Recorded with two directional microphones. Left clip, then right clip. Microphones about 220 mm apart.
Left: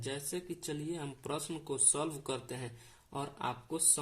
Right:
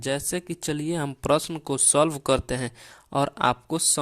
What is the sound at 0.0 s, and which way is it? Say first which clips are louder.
Speech: right 12 dB; 40° right (ahead or behind).